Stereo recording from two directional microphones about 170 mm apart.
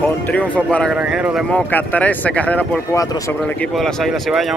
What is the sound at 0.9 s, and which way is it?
Speech, 5° right (ahead or behind).